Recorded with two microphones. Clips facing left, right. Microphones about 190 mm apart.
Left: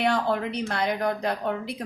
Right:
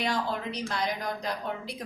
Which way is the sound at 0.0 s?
60° left (ahead or behind).